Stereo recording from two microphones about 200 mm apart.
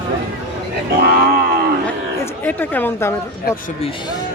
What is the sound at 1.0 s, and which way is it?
Speech, 45° right (ahead or behind).